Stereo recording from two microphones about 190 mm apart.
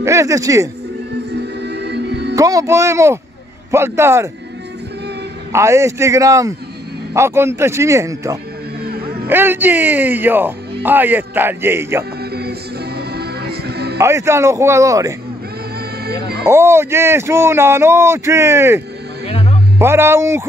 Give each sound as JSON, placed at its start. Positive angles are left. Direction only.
{"t": 0.0, "sound": "speech", "side_deg": -15}
{"t": 1.3, "sound": "music", "side_deg": -65}
{"t": 2.3, "sound": "speech", "side_deg": -15}
{"t": 5.5, "sound": "speech", "side_deg": -15}
{"t": 8.8, "sound": "music", "side_deg": -55}
{"t": 9.3, "sound": "speech", "side_deg": -10}
{"t": 12.2, "sound": "music", "side_deg": -55}
{"t": 13.9, "sound": "speech", "side_deg": -15}
{"t": 16.0, "sound": "music", "side_deg": -55}
{"t": 16.4, "sound": "speech", "side_deg": -15}
{"t": 19.8, "sound": "speech", "side_deg": -15}